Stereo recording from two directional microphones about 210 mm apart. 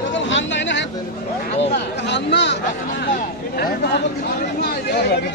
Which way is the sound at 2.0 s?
55° left (ahead or behind).